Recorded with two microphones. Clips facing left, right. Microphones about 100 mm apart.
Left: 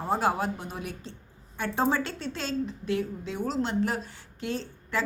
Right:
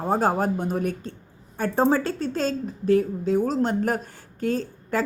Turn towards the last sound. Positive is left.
turn(degrees=-40)  # may be behind; listen again after turning